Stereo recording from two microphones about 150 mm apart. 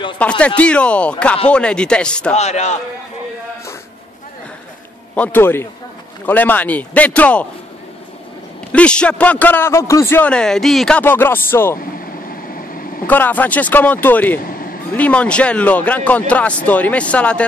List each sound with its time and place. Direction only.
0.2 s a man's voice: 10° left (ahead or behind)
2.3 s a man's voice: 50° left (ahead or behind)
5.1 s a man's voice: 10° left (ahead or behind)
8.7 s a man's voice: 5° left (ahead or behind)
13.0 s a man's voice: 10° left (ahead or behind)